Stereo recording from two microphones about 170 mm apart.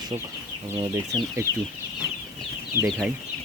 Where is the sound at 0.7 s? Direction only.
20° right (ahead or behind).